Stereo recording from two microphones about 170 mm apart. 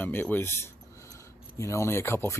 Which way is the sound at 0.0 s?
10° left (ahead or behind).